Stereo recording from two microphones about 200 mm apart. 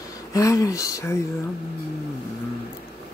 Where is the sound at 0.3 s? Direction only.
15° left (ahead or behind).